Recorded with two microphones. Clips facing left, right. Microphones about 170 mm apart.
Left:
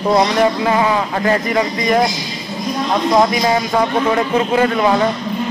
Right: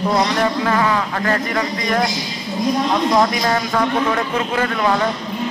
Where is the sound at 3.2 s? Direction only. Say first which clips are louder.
Left 3 dB; 10° left (ahead or behind).